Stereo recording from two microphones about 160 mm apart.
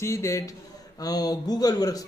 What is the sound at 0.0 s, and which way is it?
A man's voice, 20° left (ahead or behind).